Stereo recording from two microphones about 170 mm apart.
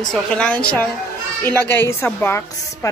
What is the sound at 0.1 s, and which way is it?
A woman's voice, 5° left (ahead or behind).